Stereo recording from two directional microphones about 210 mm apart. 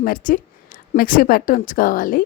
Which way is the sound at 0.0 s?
40° left (ahead or behind).